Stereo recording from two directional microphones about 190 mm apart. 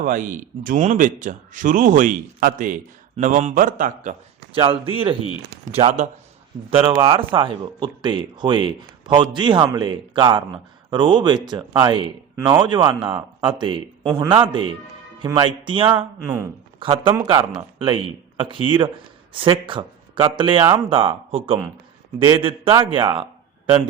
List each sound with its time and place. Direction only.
0.0 s a man's voice: 45° right (ahead or behind)
4.5 s a man's voice: 25° right (ahead or behind)
16.2 s speech: 15° right (ahead or behind)
16.8 s speech: 25° right (ahead or behind)